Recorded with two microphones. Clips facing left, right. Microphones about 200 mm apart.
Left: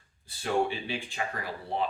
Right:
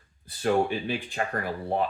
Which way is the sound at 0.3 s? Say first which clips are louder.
Right 4 dB; 50° right (ahead or behind).